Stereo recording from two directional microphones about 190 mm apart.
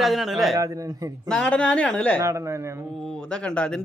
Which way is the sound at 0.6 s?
20° right (ahead or behind).